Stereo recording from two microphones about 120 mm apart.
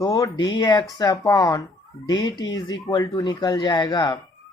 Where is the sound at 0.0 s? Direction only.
30° left (ahead or behind).